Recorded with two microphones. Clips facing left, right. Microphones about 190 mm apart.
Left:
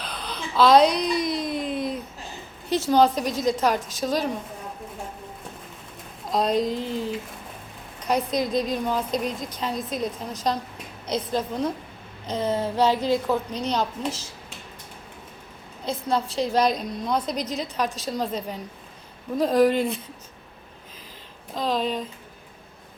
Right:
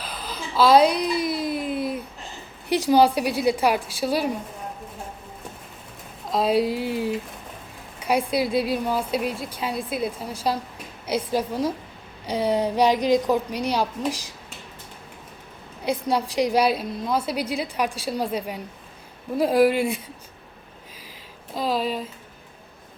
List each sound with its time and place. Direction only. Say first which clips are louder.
0.0 s a sound: even; 5° right (ahead or behind)
2.6 s a woman's voice: right 1 dB; 15° right (ahead or behind)
6.3 s a woman's voice: right 2 dB; 5° right (ahead or behind)
15.8 s a woman's voice: right 2 dB; 15° right (ahead or behind)
21.5 s a woman's voice: right 1 dB; 5° right (ahead or behind)